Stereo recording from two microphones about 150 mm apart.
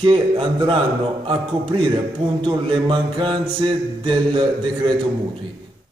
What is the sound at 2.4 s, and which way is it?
Mantra, 35° right (ahead or behind).